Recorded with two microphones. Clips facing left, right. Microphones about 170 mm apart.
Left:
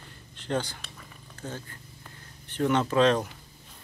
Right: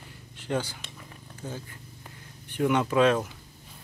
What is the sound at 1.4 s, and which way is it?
Purr, 10° right (ahead or behind).